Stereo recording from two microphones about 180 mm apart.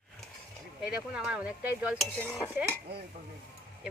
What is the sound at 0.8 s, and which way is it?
Cutlery, 5° right (ahead or behind).